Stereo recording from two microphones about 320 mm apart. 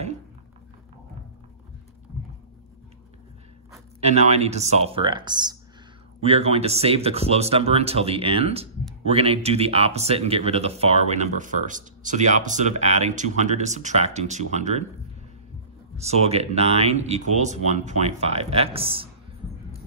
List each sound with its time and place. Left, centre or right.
4.0 s speech: centre
16.0 s speech: centre